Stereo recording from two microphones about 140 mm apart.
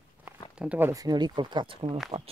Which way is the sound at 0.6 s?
10° right (ahead or behind).